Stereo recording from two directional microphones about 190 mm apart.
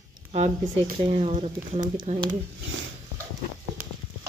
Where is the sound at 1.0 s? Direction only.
35° right (ahead or behind).